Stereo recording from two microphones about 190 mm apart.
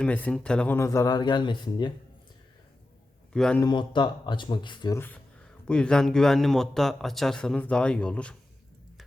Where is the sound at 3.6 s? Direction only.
25° left (ahead or behind).